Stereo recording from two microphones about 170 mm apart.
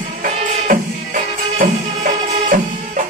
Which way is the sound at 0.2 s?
55° right (ahead or behind).